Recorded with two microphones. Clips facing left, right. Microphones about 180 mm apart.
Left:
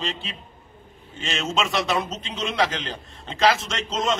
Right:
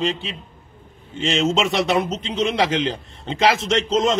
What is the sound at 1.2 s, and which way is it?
A man's voice, 25° right (ahead or behind).